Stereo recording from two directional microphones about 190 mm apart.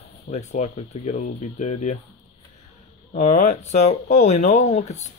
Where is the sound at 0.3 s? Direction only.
35° left (ahead or behind).